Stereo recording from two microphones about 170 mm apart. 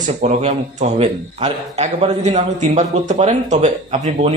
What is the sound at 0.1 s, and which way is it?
Speech, 40° right (ahead or behind).